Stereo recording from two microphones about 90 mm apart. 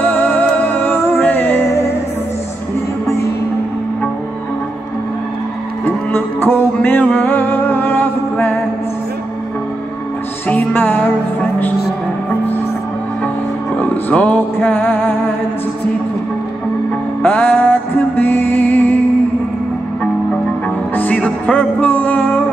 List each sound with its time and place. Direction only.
0.0 s music: 20° left (ahead or behind)
5.9 s music: 25° left (ahead or behind)
10.5 s music: 20° left (ahead or behind)
13.7 s roaring cats: 20° left (ahead or behind)
17.2 s music: 20° left (ahead or behind)
20.9 s music: 20° left (ahead or behind)